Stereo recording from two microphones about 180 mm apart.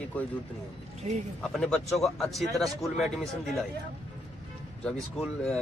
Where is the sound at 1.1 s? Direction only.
40° right (ahead or behind).